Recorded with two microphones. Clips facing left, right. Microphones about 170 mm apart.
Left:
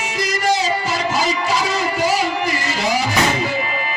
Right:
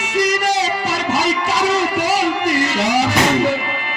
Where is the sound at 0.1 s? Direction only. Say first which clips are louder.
Right 3 dB; 70° right (ahead or behind).